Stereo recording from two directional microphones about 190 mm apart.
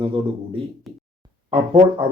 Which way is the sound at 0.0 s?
30° right (ahead or behind).